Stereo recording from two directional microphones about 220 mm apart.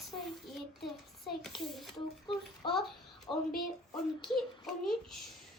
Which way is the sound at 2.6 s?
Centre (ahead or behind).